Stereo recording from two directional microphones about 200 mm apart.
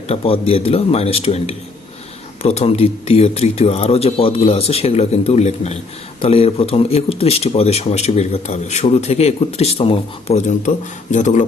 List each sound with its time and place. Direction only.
0.1 s speech: 30° left (ahead or behind)